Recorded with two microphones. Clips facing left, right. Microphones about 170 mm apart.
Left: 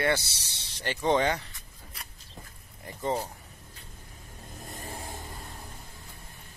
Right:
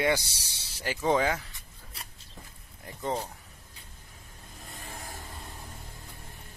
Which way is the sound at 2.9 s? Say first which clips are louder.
Left 2 dB; centre (ahead or behind).